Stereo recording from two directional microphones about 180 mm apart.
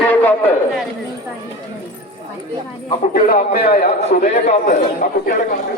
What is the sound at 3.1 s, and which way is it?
A man's voice, 55° left (ahead or behind).